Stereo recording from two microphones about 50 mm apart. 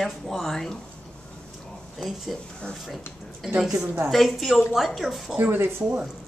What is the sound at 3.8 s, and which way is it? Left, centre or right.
Speech, right.